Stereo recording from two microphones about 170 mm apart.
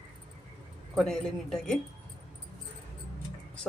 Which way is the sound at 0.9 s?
Centre (ahead or behind).